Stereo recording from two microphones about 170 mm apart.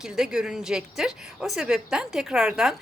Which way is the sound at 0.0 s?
5° right (ahead or behind).